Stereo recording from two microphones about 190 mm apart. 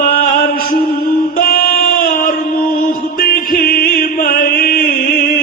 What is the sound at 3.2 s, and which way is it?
Chant, 50° left (ahead or behind).